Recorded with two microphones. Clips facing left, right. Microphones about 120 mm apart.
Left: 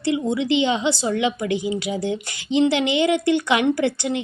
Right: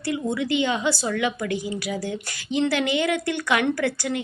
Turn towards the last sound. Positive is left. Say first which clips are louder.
# left 3 dB
turn(degrees=25)  # may be behind; listen again after turning